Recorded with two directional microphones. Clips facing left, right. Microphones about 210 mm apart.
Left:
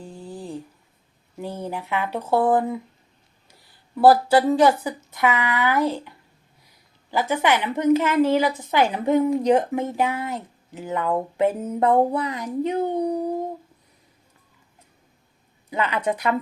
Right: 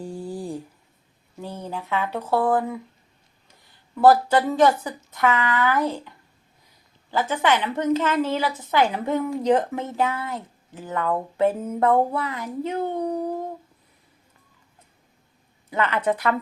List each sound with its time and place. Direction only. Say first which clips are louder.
0.0 s a sound: right 5 dB; 10° right (ahead or behind)
1.4 s a woman's voice: left 2 dB; 10° left (ahead or behind)
3.9 s a woman's voice: left 1 dB; 10° left (ahead or behind)
7.1 s a woman's voice: left 1 dB; 10° left (ahead or behind)
15.7 s a woman's voice: right 1 dB; 15° left (ahead or behind)